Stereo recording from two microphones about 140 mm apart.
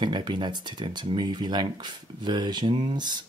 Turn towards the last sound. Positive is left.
turn(degrees=-30)  # may be behind; listen again after turning